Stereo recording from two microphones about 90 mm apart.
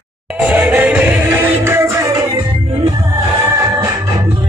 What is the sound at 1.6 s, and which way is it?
Music, 30° right (ahead or behind).